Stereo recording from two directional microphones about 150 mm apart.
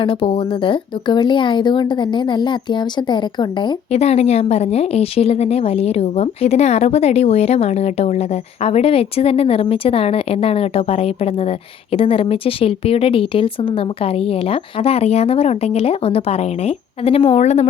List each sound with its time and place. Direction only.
0.0 s speech: 35° left (ahead or behind)
3.9 s a woman's voice: 45° left (ahead or behind)